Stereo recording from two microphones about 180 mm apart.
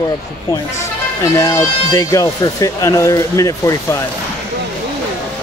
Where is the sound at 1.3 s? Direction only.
20° left (ahead or behind).